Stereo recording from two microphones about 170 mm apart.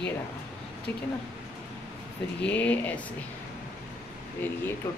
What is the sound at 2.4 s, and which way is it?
Speech, 10° left (ahead or behind).